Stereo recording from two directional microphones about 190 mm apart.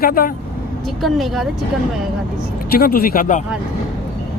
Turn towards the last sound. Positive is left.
turn(degrees=45)  # may be behind; listen again after turning